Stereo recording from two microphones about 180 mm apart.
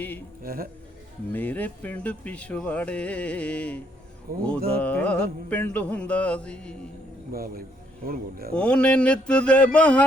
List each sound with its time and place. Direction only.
0.4 s speech: 55° right (ahead or behind)
1.3 s speech: 10° left (ahead or behind)
4.3 s a man's voice: 55° right (ahead or behind)
4.8 s speech: 10° left (ahead or behind)
7.3 s a man's voice: 55° right (ahead or behind)
8.5 s speech: 5° left (ahead or behind)